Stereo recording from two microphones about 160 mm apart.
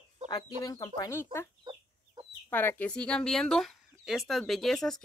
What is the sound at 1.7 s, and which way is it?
Chicken, 30° right (ahead or behind).